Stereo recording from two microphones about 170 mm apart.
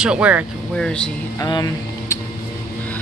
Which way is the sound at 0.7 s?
5° left (ahead or behind).